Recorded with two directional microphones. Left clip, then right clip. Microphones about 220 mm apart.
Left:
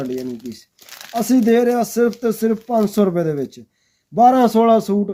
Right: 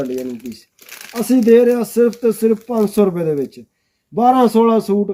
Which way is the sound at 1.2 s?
45° left (ahead or behind).